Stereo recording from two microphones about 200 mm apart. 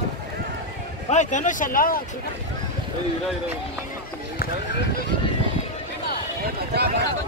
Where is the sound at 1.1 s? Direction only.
40° left (ahead or behind).